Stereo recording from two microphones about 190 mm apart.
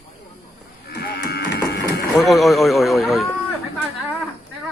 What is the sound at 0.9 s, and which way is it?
Livestock, 60° left (ahead or behind).